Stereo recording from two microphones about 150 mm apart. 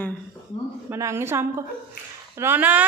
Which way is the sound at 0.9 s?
15° right (ahead or behind).